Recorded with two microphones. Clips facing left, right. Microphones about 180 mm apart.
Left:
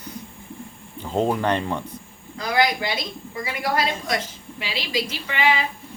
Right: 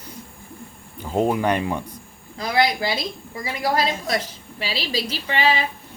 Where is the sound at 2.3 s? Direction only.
30° right (ahead or behind).